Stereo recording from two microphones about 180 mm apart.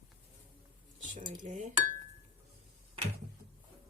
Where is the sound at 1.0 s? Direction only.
45° right (ahead or behind).